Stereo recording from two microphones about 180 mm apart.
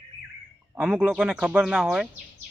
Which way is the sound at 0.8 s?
5° right (ahead or behind).